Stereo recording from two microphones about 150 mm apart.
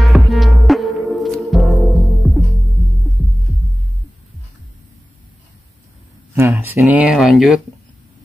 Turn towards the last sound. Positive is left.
turn(degrees=0)  # may be behind; listen again after turning